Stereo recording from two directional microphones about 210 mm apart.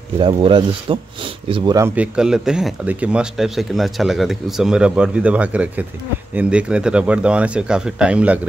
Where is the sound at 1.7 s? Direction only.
10° right (ahead or behind).